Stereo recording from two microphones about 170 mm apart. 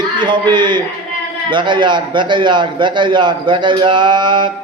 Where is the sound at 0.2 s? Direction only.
25° right (ahead or behind).